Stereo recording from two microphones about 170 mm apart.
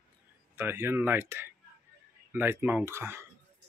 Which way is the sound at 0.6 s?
15° right (ahead or behind).